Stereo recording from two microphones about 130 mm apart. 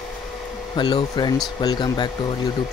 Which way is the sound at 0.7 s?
35° left (ahead or behind).